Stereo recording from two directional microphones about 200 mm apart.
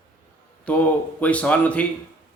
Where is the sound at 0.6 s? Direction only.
5° left (ahead or behind).